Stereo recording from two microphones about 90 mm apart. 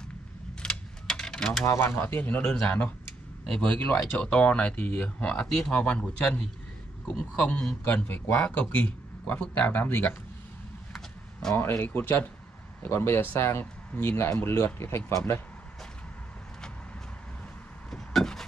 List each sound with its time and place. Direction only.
0.6 s mechanisms: 5° left (ahead or behind)
1.7 s speech: 30° left (ahead or behind)
2.4 s speech: 5° left (ahead or behind)
7.8 s speech: 25° left (ahead or behind)
8.4 s speech: 10° left (ahead or behind)
11.5 s speech: 30° left (ahead or behind)
17.8 s wood: 5° left (ahead or behind)